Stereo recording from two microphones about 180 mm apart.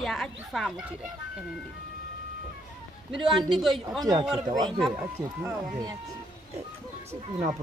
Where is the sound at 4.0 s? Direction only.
20° right (ahead or behind).